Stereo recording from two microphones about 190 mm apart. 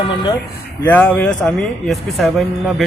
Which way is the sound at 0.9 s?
10° left (ahead or behind).